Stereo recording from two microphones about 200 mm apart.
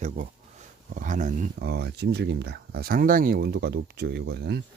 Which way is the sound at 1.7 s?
55° right (ahead or behind).